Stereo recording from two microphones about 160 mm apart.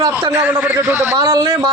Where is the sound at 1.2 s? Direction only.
25° right (ahead or behind).